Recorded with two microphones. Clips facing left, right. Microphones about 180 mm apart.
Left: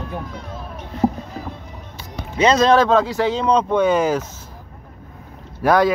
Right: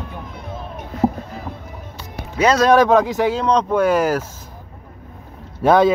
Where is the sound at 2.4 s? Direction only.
10° right (ahead or behind).